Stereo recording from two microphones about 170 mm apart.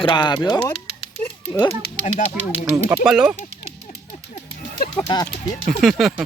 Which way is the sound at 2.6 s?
10° right (ahead or behind).